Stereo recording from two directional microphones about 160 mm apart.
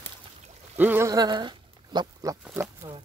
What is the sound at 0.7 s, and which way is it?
Speech, 15° right (ahead or behind).